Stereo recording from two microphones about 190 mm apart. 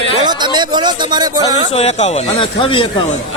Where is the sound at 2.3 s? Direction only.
25° left (ahead or behind).